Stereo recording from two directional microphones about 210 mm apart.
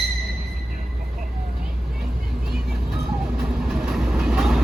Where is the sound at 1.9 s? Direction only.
Centre (ahead or behind).